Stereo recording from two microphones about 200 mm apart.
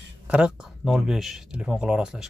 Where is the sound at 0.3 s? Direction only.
5° right (ahead or behind).